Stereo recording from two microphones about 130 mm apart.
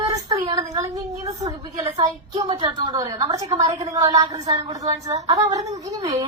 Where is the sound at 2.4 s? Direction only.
40° right (ahead or behind).